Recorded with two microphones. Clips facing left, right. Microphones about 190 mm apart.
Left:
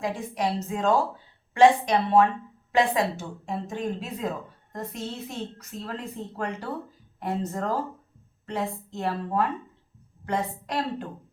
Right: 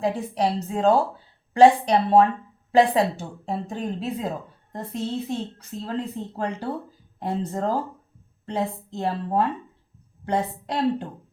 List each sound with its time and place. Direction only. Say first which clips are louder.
0.0 s a woman's voice: right 4 dB; 35° right (ahead or behind)